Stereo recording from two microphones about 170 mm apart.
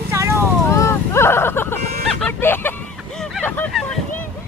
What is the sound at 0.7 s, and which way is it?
Vehicle, 15° left (ahead or behind).